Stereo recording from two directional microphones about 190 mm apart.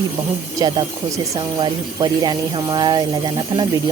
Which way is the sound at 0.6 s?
25° right (ahead or behind).